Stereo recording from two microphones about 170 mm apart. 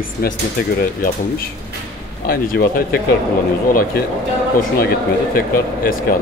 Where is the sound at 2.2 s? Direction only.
60° left (ahead or behind).